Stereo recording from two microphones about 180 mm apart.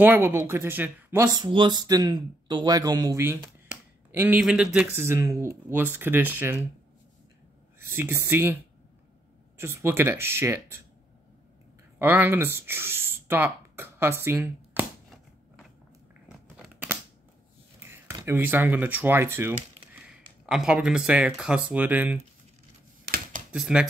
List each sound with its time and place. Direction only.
0.0 s a man's voice: 10° right (ahead or behind)
7.8 s a man's voice: 15° right (ahead or behind)
9.6 s a man's voice: 15° right (ahead or behind)
12.0 s speech: 10° right (ahead or behind)
16.3 s crunch: 5° right (ahead or behind)
18.1 s a man's voice: 15° right (ahead or behind)
23.5 s speech: 5° right (ahead or behind)